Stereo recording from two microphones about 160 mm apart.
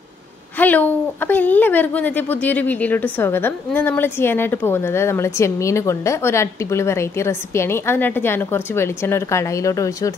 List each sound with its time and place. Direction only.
0.6 s a woman's voice: 10° left (ahead or behind)